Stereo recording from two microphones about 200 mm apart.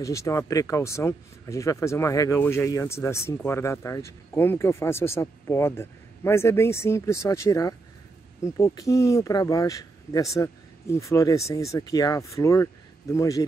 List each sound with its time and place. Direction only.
0.0 s speech: 15° left (ahead or behind)